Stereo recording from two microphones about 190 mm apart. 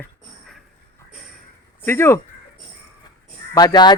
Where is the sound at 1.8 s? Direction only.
10° left (ahead or behind).